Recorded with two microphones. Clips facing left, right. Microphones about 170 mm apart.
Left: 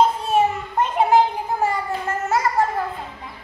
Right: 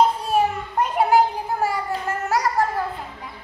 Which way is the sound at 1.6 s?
Centre (ahead or behind).